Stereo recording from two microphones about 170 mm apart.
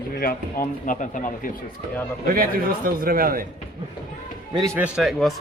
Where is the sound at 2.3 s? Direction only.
60° right (ahead or behind).